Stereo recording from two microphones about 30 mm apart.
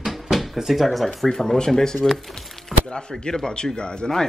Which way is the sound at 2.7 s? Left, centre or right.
Left.